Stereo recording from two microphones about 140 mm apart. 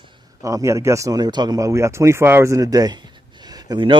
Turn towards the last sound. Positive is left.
turn(degrees=-30)  # may be behind; listen again after turning